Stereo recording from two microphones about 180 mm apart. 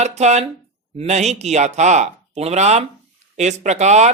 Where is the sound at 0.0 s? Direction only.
40° right (ahead or behind).